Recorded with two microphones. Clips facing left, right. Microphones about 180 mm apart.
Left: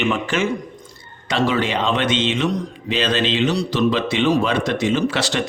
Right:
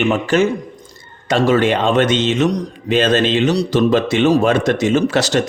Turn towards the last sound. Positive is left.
turn(degrees=-45)  # may be behind; listen again after turning